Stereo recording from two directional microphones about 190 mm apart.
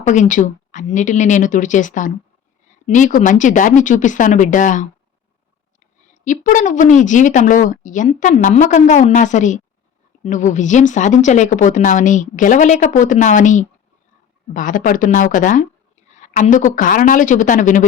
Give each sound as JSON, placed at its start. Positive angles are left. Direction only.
{"t": 0.0, "sound": "speech", "side_deg": 40}
{"t": 6.2, "sound": "a woman's voice", "side_deg": 40}